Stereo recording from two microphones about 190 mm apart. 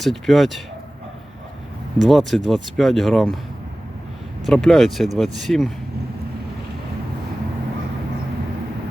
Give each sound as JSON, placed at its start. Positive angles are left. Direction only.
{"t": 0.0, "sound": "speech", "side_deg": 0}
{"t": 2.0, "sound": "speech", "side_deg": 0}
{"t": 4.4, "sound": "speech", "side_deg": 0}